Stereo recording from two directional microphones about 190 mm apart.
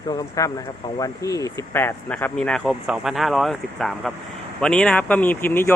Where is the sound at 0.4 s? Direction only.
20° left (ahead or behind).